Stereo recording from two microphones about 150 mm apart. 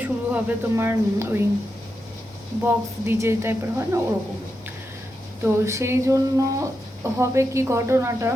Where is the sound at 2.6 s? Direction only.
15° right (ahead or behind).